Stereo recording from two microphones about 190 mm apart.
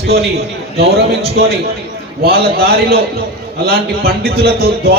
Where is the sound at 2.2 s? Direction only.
55° right (ahead or behind).